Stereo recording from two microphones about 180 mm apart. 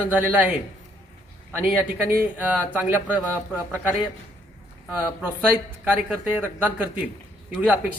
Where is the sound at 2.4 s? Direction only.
10° right (ahead or behind).